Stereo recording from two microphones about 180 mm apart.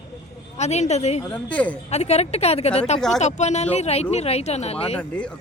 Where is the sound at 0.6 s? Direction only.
40° left (ahead or behind).